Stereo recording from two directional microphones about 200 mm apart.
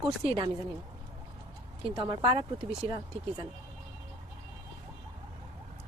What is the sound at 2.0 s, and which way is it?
Speech, 25° right (ahead or behind).